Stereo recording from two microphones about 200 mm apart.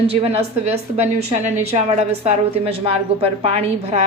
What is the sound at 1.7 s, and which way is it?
A woman's voice, 35° right (ahead or behind).